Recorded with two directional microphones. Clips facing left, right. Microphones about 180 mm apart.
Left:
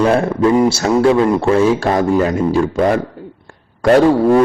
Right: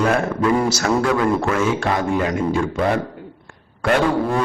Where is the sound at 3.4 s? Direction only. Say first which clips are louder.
Left 8 dB; 40° left (ahead or behind).